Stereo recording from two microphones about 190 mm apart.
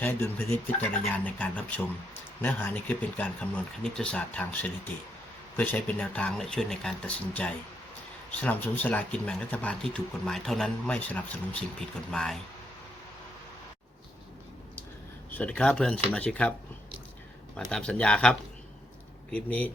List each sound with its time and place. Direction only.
0.0 s speech: 10° left (ahead or behind)
15.3 s speech: 5° left (ahead or behind)
17.7 s speech: 5° left (ahead or behind)